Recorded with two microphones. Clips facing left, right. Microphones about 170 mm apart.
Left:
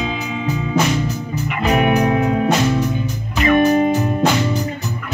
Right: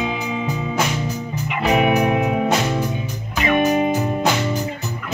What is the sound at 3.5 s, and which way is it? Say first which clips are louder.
Music: left 3 dB; 15° right (ahead or behind).